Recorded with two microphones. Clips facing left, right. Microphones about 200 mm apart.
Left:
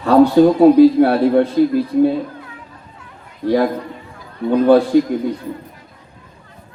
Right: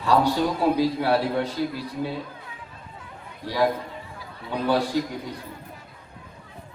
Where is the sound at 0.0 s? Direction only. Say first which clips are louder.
Left 11 dB; 55° left (ahead or behind).